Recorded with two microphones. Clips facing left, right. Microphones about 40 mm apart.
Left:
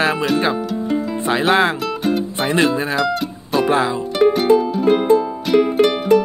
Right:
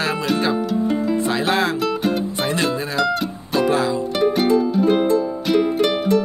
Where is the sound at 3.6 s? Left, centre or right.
Left.